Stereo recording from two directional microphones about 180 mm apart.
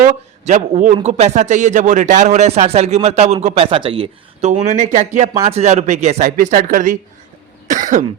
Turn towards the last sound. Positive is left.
turn(degrees=-45)  # may be behind; listen again after turning